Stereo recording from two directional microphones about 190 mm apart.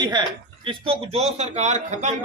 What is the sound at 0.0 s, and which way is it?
A man's voice, 25° right (ahead or behind).